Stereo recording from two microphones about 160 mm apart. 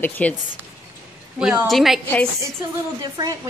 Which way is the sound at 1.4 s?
5° right (ahead or behind).